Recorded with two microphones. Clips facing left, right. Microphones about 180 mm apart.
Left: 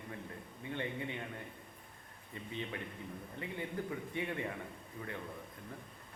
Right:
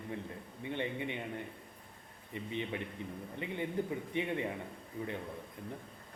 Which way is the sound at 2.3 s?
20° right (ahead or behind).